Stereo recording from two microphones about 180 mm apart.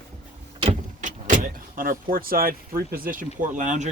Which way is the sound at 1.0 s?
45° right (ahead or behind).